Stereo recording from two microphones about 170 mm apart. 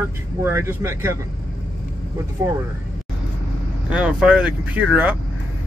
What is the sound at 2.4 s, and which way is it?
Speech, 20° right (ahead or behind).